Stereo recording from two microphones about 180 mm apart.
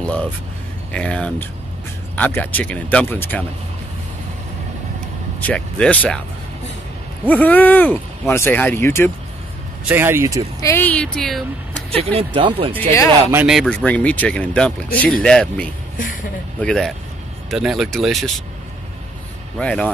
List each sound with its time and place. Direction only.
0.0 s a sound: 5° left (ahead or behind)
0.9 s speech: 5° left (ahead or behind)
5.4 s speech: 5° left (ahead or behind)
7.2 s speech: 10° left (ahead or behind)
9.8 s speech: 10° right (ahead or behind)
10.6 s speech: 10° left (ahead or behind)
11.9 s speech: 35° right (ahead or behind)
13.3 s speech: 10° right (ahead or behind)
13.6 s speech: 5° left (ahead or behind)
19.6 s speech: 5° left (ahead or behind)